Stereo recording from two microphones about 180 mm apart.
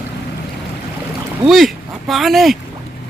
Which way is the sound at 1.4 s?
Centre (ahead or behind).